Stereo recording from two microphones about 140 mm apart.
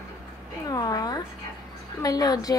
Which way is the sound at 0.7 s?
25° left (ahead or behind).